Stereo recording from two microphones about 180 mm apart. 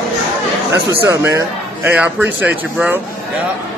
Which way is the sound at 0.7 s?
15° right (ahead or behind).